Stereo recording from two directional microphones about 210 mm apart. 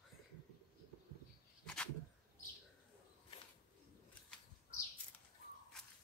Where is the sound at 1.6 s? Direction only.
5° left (ahead or behind).